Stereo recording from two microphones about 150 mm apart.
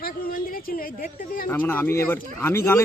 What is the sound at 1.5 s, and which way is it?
Speech, 10° left (ahead or behind).